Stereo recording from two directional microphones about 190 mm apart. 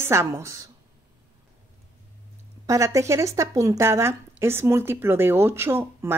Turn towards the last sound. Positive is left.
turn(degrees=-10)  # may be behind; listen again after turning